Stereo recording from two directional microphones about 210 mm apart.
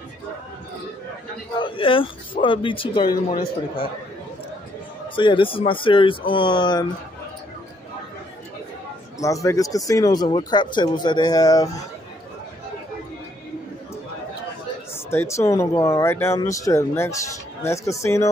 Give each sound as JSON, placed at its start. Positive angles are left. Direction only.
{"t": 1.6, "sound": "speech", "side_deg": 25}
{"t": 5.1, "sound": "speech", "side_deg": 25}
{"t": 9.2, "sound": "speech", "side_deg": 15}
{"t": 15.0, "sound": "speech", "side_deg": 10}